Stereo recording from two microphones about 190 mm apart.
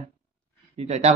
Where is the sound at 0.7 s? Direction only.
35° right (ahead or behind).